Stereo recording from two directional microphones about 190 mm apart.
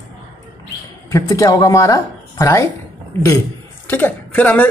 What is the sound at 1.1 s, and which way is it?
Speech, 20° left (ahead or behind).